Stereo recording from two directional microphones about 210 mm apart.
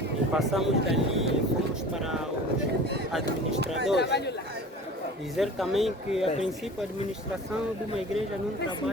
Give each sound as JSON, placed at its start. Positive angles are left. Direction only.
{"t": 0.3, "sound": "speech", "side_deg": 0}
{"t": 3.9, "sound": "speech", "side_deg": 55}
{"t": 5.4, "sound": "speech", "side_deg": 0}